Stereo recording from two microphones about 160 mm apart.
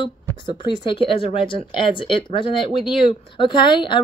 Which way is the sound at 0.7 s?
35° left (ahead or behind).